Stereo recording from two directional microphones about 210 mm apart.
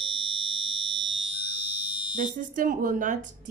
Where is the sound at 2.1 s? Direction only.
40° right (ahead or behind).